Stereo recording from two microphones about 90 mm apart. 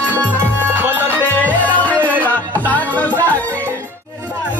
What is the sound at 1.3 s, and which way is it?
Music, 20° left (ahead or behind).